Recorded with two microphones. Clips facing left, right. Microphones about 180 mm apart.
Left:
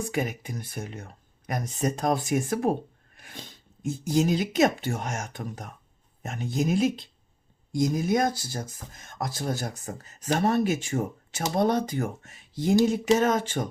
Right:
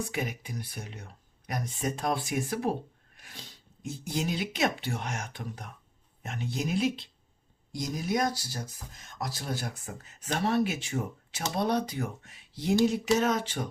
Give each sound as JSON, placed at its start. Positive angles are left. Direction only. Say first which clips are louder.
{"t": 0.1, "sound": "speech", "louder": "left 5 dB", "side_deg": 50}